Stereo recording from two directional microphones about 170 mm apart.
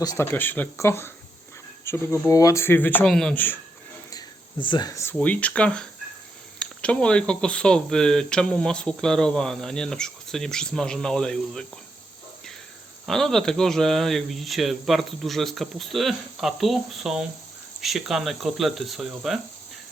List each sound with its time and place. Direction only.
0.0 s speech: 20° left (ahead or behind)
4.1 s a sound: 30° left (ahead or behind)
5.1 s speech: 10° left (ahead or behind)
13.1 s speech: centre (ahead or behind)